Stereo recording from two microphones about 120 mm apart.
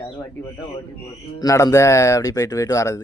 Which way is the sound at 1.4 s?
30° left (ahead or behind).